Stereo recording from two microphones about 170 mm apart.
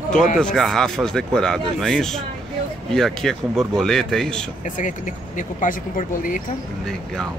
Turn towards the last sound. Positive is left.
turn(degrees=55)  # may be behind; listen again after turning